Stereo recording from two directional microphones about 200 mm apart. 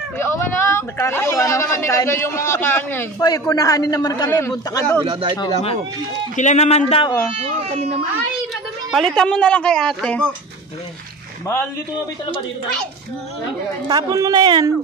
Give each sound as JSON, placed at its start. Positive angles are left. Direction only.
{"t": 0.2, "sound": "a man's voice", "side_deg": 15}
{"t": 4.9, "sound": "a man's voice", "side_deg": -20}
{"t": 6.3, "sound": "a man's voice", "side_deg": 35}
{"t": 7.3, "sound": "speech", "side_deg": -30}
{"t": 8.9, "sound": "speech", "side_deg": 5}
{"t": 13.8, "sound": "a man's voice", "side_deg": -20}